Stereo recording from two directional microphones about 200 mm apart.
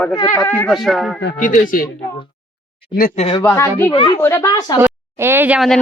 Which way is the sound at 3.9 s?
25° left (ahead or behind).